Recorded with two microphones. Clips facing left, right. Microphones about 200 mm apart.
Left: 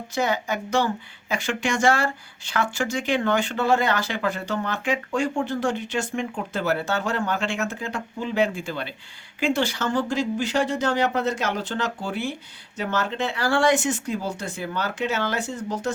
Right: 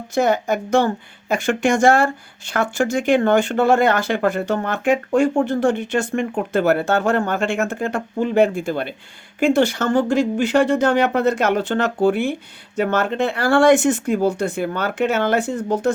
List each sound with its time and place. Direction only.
0.1 s speech: 50° right (ahead or behind)